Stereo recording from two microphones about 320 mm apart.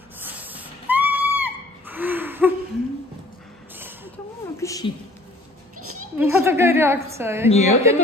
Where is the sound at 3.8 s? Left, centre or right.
Centre.